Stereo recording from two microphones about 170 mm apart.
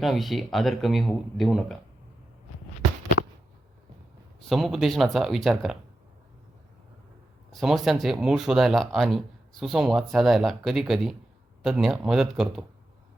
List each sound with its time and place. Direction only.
0.0 s speech: centre (ahead or behind)
4.4 s speech: centre (ahead or behind)
7.5 s speech: centre (ahead or behind)